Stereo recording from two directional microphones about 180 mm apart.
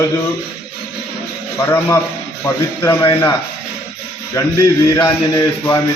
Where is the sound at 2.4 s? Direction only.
15° left (ahead or behind).